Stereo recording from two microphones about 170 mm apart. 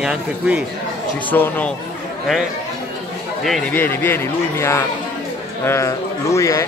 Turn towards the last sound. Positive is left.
turn(degrees=15)  # may be behind; listen again after turning